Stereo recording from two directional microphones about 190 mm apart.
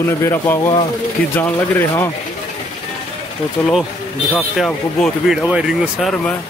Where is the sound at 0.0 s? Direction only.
15° left (ahead or behind).